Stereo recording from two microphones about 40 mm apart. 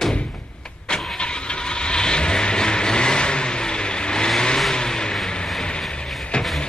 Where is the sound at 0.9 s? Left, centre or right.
Left.